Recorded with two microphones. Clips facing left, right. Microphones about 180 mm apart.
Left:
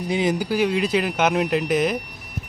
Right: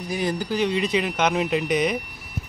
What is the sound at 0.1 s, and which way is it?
Speech, 25° left (ahead or behind).